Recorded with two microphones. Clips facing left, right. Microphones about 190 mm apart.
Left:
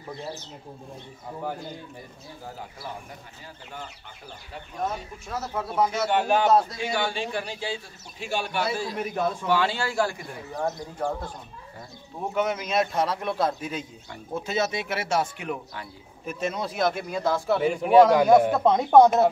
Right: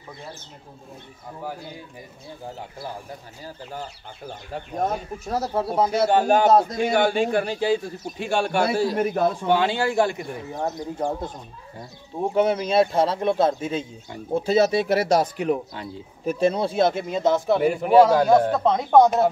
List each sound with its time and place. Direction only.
3.7 s speech: 40° right (ahead or behind)
9.5 s speech: 20° right (ahead or behind)
17.6 s a man's voice: 5° right (ahead or behind)
18.2 s speech: 10° left (ahead or behind)